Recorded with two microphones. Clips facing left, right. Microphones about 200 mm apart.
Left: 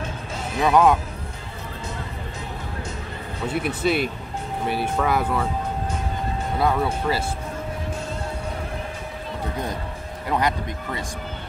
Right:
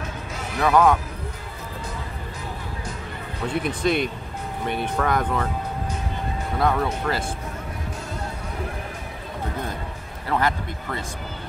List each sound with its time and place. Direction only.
0.6 s speech: 20° left (ahead or behind)
3.4 s speech: 5° left (ahead or behind)
6.6 s speech: 5° left (ahead or behind)
10.3 s speech: 15° left (ahead or behind)